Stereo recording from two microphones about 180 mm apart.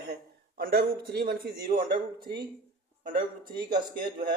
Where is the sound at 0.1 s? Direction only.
60° right (ahead or behind).